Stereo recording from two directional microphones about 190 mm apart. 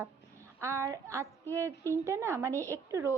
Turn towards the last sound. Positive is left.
turn(degrees=-15)  # may be behind; listen again after turning